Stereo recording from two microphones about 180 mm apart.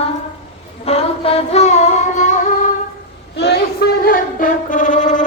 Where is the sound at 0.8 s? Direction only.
35° left (ahead or behind).